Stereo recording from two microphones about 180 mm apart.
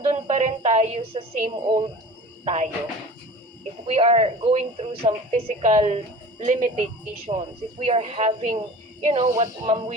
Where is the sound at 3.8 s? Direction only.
35° right (ahead or behind).